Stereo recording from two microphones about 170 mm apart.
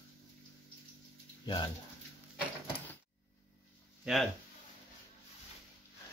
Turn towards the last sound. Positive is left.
turn(degrees=0)  # may be behind; listen again after turning